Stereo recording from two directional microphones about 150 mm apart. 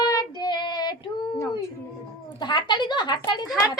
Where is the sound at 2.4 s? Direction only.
30° left (ahead or behind).